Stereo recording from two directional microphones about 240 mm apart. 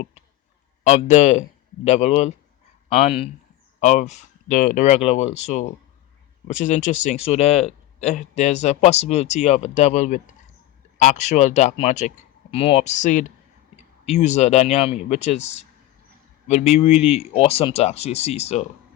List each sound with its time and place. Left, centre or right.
0.9 s speech: left